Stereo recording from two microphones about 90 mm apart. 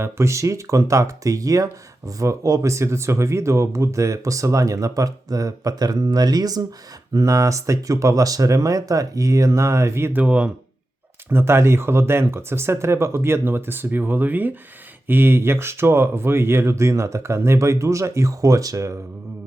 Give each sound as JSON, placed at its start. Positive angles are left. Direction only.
{"t": 0.0, "sound": "speech", "side_deg": -30}
{"t": 11.3, "sound": "speech", "side_deg": -25}